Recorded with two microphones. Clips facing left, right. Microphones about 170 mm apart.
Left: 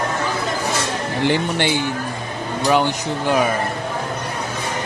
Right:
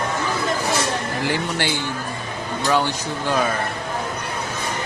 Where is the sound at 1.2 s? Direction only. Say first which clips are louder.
Left 7 dB; 20° left (ahead or behind).